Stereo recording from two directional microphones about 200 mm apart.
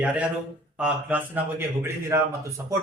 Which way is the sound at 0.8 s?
10° right (ahead or behind).